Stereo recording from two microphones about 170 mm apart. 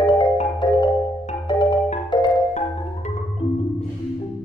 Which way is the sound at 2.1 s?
30° left (ahead or behind).